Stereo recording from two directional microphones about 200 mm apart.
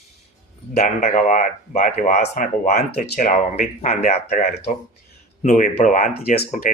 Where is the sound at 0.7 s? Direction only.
40° left (ahead or behind).